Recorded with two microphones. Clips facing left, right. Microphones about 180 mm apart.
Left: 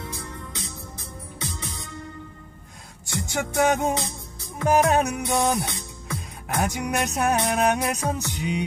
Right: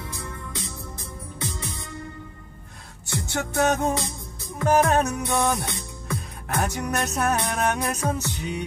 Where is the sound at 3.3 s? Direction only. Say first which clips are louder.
Left 1 dB; 15° left (ahead or behind).